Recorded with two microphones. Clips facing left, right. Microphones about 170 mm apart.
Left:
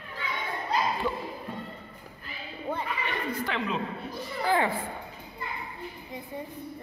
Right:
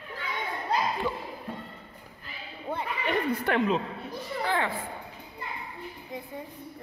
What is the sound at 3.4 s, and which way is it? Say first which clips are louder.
Speech: right 9 dB; 50° right (ahead or behind).